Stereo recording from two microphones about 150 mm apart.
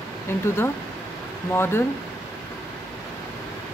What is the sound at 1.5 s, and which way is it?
Speech, 15° left (ahead or behind).